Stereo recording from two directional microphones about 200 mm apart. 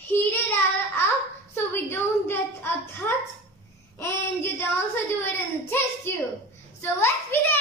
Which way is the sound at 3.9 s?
10° left (ahead or behind).